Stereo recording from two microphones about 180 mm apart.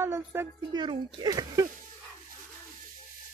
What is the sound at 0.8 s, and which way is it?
Speech, 25° right (ahead or behind).